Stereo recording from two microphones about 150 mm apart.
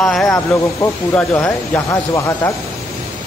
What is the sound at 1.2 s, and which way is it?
A man's voice, 15° left (ahead or behind).